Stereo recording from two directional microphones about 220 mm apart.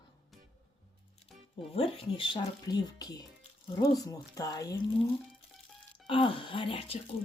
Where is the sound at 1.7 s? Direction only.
25° left (ahead or behind).